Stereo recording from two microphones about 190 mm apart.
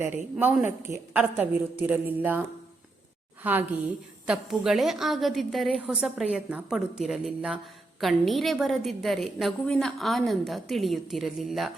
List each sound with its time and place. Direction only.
0.3 s speech: 10° right (ahead or behind)
3.4 s a woman's voice: 10° right (ahead or behind)